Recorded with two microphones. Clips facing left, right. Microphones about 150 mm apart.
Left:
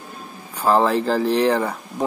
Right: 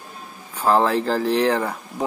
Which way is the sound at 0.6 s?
Centre (ahead or behind).